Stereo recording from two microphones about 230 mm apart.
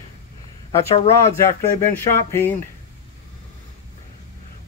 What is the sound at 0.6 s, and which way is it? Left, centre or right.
Speech, left.